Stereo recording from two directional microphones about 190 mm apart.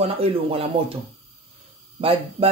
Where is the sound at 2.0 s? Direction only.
30° right (ahead or behind).